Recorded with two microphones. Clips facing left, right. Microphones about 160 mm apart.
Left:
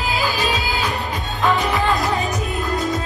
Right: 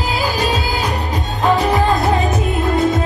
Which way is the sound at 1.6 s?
35° right (ahead or behind).